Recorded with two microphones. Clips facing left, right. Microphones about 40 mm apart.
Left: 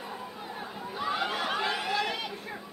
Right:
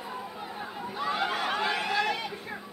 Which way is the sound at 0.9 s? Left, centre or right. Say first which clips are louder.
Right 1 dB; centre.